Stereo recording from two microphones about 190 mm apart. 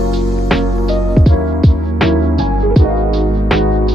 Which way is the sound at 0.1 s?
Centre (ahead or behind).